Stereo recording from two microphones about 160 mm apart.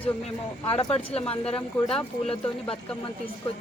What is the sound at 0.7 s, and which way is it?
A woman's voice, 35° left (ahead or behind).